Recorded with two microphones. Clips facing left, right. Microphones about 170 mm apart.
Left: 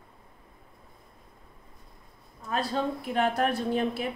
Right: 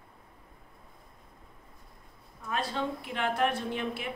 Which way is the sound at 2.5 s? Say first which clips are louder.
Left 3 dB; 40° left (ahead or behind).